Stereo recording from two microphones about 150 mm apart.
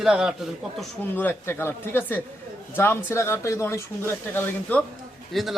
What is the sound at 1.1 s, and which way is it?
Speech, 15° left (ahead or behind).